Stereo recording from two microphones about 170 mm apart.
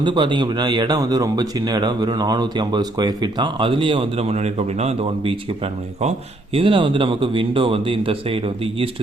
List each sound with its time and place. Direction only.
0.0 s speech: 25° right (ahead or behind)